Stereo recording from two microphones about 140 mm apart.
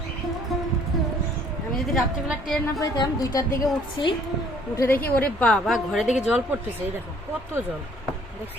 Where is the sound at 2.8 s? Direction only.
25° left (ahead or behind).